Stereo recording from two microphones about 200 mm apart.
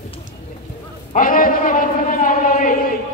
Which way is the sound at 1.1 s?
45° left (ahead or behind).